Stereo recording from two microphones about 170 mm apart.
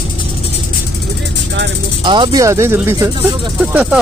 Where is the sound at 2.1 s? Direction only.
30° right (ahead or behind).